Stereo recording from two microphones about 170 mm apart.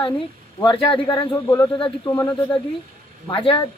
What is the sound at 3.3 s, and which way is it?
Speech, 30° left (ahead or behind).